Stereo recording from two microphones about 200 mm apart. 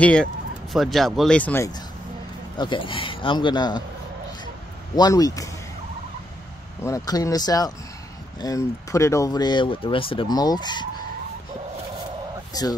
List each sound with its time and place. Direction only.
0.0 s speech: 5° left (ahead or behind)
2.5 s speech: 25° left (ahead or behind)
4.9 s speech: 20° left (ahead or behind)
6.8 s speech: 15° left (ahead or behind)
12.5 s speech: 20° left (ahead or behind)